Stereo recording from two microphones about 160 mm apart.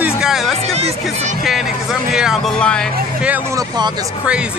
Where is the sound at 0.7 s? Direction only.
40° right (ahead or behind).